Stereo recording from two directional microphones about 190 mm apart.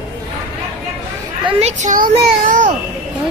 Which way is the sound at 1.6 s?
40° right (ahead or behind).